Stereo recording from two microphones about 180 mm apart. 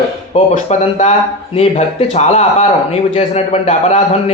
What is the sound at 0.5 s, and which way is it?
A man's voice, 40° left (ahead or behind).